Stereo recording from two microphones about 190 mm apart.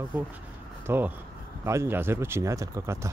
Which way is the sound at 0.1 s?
10° right (ahead or behind).